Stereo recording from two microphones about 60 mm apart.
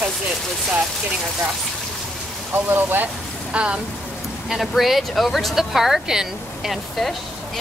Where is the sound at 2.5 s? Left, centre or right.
Right.